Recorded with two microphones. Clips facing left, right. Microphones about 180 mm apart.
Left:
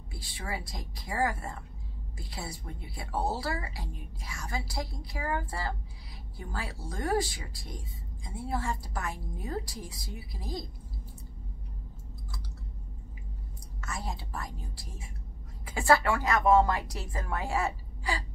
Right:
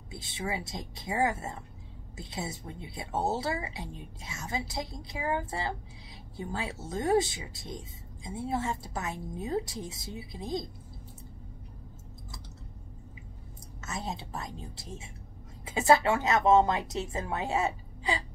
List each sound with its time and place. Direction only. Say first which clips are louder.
0.1 s speech: right 3 dB; 20° right (ahead or behind)
13.7 s speech: right 2 dB; 20° right (ahead or behind)